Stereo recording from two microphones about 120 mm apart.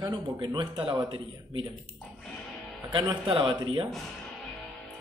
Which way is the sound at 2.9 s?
45° right (ahead or behind).